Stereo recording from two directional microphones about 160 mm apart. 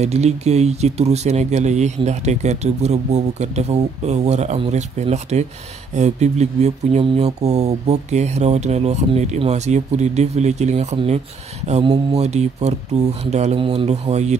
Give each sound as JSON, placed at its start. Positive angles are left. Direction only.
{"t": 0.0, "sound": "speech", "side_deg": -45}